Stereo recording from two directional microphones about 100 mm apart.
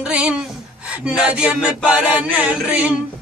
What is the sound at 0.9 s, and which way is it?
Music, 10° right (ahead or behind).